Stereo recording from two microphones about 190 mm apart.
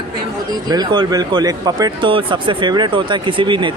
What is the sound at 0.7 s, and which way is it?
Speech, 20° right (ahead or behind).